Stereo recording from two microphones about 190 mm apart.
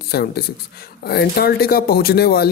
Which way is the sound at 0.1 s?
55° left (ahead or behind).